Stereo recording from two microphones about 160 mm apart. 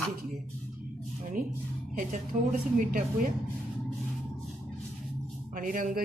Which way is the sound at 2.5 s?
65° right (ahead or behind).